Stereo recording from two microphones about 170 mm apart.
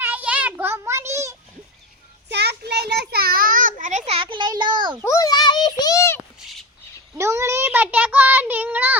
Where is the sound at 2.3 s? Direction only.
75° right (ahead or behind); by 5.0 s 25° right (ahead or behind).